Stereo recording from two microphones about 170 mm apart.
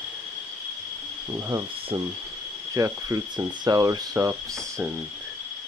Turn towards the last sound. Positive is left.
turn(degrees=-20)  # may be behind; listen again after turning